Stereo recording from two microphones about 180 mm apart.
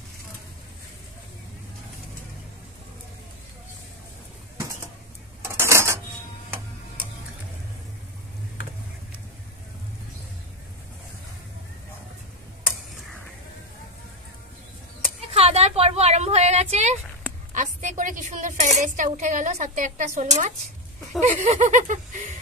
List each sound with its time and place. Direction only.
5.4 s dishes: 15° right (ahead or behind)
15.3 s a woman's voice: 35° right (ahead or behind)
21.2 s a sound: 40° right (ahead or behind)